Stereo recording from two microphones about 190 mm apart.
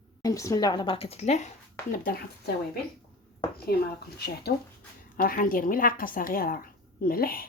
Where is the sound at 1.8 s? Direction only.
15° left (ahead or behind).